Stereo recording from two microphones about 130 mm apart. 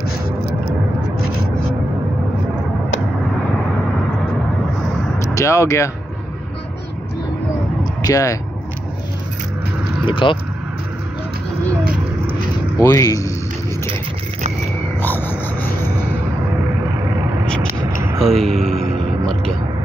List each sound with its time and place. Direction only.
5.2 s speech: 25° left (ahead or behind)
8.0 s speech: 25° left (ahead or behind)
10.0 s speech: 40° left (ahead or behind)
12.8 s speech: 25° left (ahead or behind)
15.0 s a sound: 15° left (ahead or behind)
18.2 s music: 5° left (ahead or behind)